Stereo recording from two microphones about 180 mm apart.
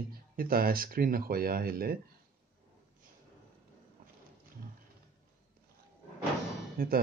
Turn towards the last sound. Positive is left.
turn(degrees=-55)  # may be behind; listen again after turning